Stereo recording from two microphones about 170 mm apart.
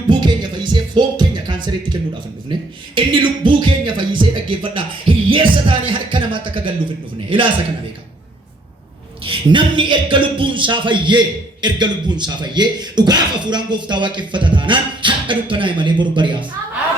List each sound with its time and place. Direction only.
0.1 s music: 25° right (ahead or behind)
2.5 s a man's voice: 30° right (ahead or behind)
9.2 s a man's voice: 30° right (ahead or behind)